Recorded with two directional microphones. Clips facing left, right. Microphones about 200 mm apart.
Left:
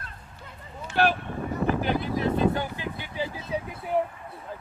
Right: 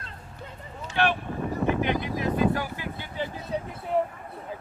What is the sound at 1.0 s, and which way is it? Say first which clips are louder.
Speech: left 2 dB; 40° left (ahead or behind).